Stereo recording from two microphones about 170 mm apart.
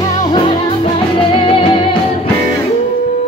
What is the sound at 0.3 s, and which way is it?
Music, 30° left (ahead or behind).